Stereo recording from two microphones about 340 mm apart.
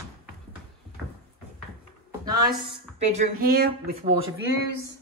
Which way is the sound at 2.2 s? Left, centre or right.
Centre.